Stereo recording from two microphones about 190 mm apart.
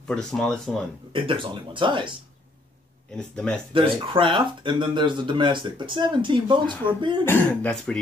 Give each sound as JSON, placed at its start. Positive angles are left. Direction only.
{"t": 0.1, "sound": "speech", "side_deg": 5}
{"t": 1.1, "sound": "speech", "side_deg": -25}
{"t": 3.2, "sound": "speech", "side_deg": 5}
{"t": 3.7, "sound": "speech", "side_deg": -30}
{"t": 7.2, "sound": "speech", "side_deg": 10}